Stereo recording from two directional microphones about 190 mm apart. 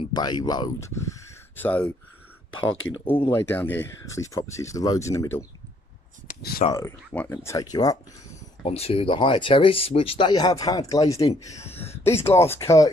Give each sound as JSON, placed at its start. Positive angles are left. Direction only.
{"t": 0.0, "sound": "speech", "side_deg": 20}
{"t": 2.5, "sound": "speech", "side_deg": 90}
{"t": 3.3, "sound": "speech", "side_deg": 10}
{"t": 6.6, "sound": "speech", "side_deg": 35}
{"t": 7.1, "sound": "speech", "side_deg": 10}
{"t": 8.6, "sound": "speech", "side_deg": 30}